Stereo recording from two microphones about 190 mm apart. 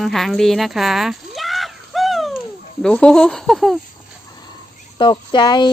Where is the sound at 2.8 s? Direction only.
5° left (ahead or behind).